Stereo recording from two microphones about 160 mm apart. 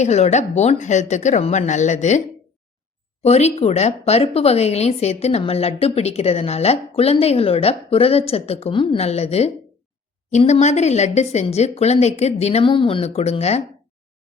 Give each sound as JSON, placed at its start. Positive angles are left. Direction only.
{"t": 0.0, "sound": "speech", "side_deg": 45}
{"t": 3.2, "sound": "speech", "side_deg": 40}